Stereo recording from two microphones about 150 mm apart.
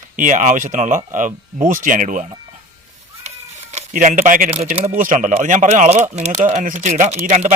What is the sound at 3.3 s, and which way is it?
Chicken, 50° right (ahead or behind).